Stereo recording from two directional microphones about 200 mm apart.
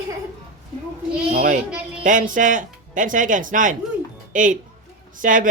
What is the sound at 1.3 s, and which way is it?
A child's voice, 50° right (ahead or behind).